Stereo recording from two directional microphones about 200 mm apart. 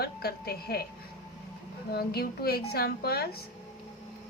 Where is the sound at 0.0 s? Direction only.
50° left (ahead or behind).